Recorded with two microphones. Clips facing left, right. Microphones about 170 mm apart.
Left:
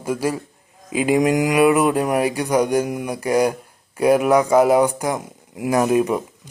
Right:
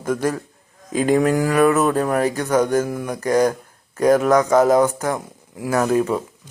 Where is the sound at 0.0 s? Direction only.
10° left (ahead or behind).